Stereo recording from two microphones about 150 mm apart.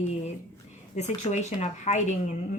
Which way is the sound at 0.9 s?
50° left (ahead or behind).